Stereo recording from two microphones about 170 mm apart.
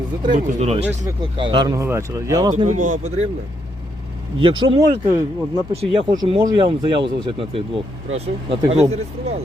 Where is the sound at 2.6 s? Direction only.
45° right (ahead or behind).